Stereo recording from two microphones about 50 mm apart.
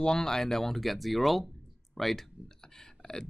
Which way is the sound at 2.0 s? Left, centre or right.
Centre.